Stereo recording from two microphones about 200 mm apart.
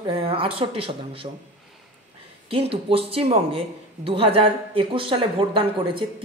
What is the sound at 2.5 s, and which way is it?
A man's voice, 30° right (ahead or behind).